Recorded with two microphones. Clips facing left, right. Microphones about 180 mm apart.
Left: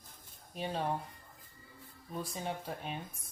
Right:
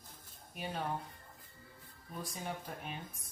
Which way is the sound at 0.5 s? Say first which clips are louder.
Left 4 dB; 30° left (ahead or behind).